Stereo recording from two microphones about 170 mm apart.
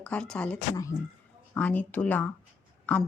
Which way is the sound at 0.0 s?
5° left (ahead or behind).